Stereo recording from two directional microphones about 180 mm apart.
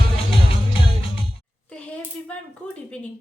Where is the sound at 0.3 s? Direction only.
30° left (ahead or behind).